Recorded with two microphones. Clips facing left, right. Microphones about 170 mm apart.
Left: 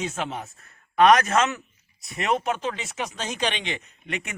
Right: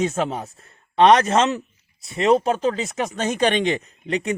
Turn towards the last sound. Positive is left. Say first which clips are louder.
# right 10 dB
turn(degrees=-35)  # may be behind; listen again after turning